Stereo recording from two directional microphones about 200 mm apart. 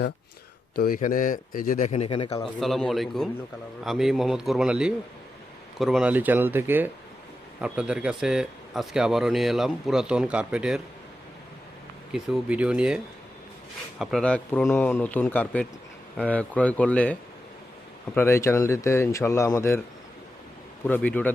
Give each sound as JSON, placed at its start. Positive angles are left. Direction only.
{"t": 0.8, "sound": "a man's voice", "side_deg": 40}
{"t": 2.4, "sound": "speech", "side_deg": 0}
{"t": 12.1, "sound": "speech", "side_deg": -5}
{"t": 14.0, "sound": "speech", "side_deg": 0}
{"t": 20.8, "sound": "speech", "side_deg": 5}